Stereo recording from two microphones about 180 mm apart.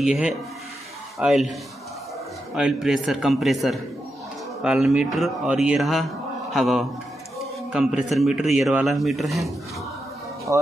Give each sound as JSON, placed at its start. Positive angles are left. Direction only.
{"t": 0.0, "sound": "speech", "side_deg": -5}
{"t": 2.5, "sound": "speech", "side_deg": -5}
{"t": 10.5, "sound": "speech", "side_deg": -15}